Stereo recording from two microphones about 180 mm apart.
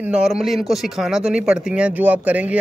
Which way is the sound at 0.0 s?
5° right (ahead or behind).